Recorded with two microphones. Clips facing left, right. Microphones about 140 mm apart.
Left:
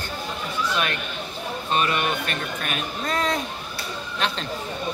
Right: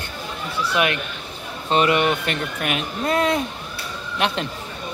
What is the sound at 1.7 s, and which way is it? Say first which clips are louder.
Speech: right 6 dB; 20° right (ahead or behind).